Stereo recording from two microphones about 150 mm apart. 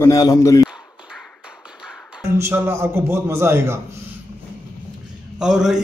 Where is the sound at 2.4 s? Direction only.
15° right (ahead or behind).